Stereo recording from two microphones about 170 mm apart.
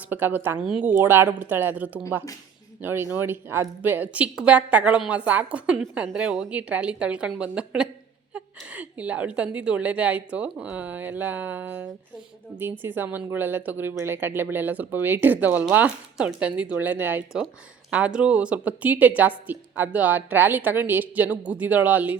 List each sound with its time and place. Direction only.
0.1 s a woman's voice: 10° right (ahead or behind)